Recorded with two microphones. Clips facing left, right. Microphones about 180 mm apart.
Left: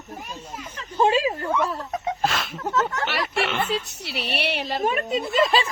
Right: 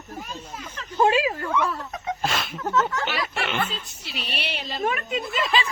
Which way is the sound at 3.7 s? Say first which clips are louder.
Left 8 dB; 80° left.